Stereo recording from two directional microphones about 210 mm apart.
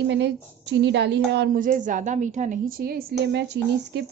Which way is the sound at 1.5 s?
40° right (ahead or behind).